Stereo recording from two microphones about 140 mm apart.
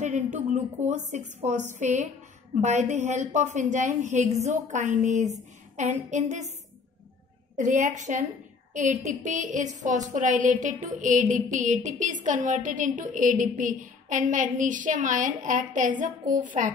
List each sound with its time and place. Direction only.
0.0 s a woman's voice: 60° right (ahead or behind)
7.5 s a woman's voice: 65° right (ahead or behind)